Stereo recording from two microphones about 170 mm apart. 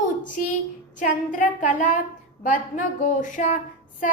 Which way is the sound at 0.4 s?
55° left (ahead or behind).